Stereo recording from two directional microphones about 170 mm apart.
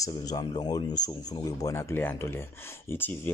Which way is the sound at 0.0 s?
20° left (ahead or behind).